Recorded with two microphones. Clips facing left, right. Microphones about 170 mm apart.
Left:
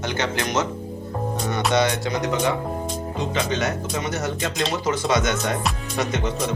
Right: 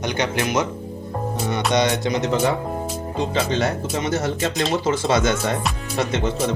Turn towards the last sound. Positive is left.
turn(degrees=-30)  # may be behind; listen again after turning